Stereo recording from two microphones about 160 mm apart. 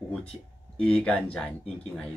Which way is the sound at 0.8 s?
5° left (ahead or behind).